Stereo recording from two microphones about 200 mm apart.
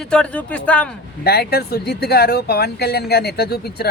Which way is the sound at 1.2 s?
50° left (ahead or behind).